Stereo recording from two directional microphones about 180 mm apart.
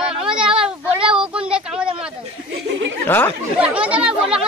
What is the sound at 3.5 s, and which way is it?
Chatter, 5° right (ahead or behind).